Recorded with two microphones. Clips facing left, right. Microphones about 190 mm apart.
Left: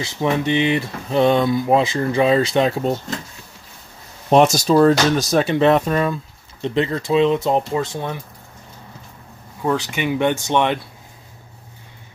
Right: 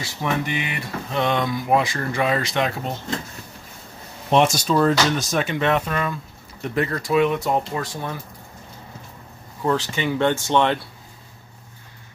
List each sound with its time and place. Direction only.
0.0 s speech: 25° left (ahead or behind)
4.3 s speech: 40° left (ahead or behind)
6.6 s speech: 20° left (ahead or behind)
9.7 s speech: 15° left (ahead or behind)